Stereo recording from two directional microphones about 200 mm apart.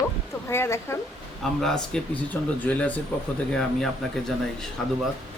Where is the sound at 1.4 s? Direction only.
Centre (ahead or behind).